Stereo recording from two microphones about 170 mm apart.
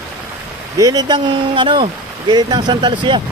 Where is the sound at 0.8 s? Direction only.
25° right (ahead or behind).